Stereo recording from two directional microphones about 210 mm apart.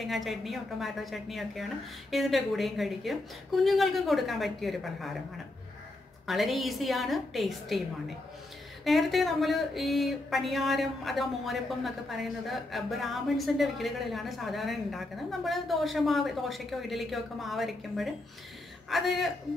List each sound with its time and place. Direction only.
0.0 s speech: centre (ahead or behind)
6.2 s speech: centre (ahead or behind)